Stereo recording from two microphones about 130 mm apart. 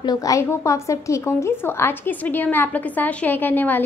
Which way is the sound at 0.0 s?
30° left (ahead or behind).